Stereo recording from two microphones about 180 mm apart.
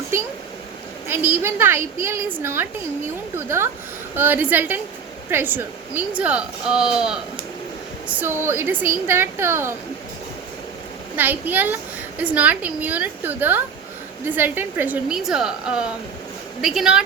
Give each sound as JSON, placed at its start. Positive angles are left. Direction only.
{"t": 1.3, "sound": "a woman's voice", "side_deg": -10}
{"t": 11.2, "sound": "a woman's voice", "side_deg": -10}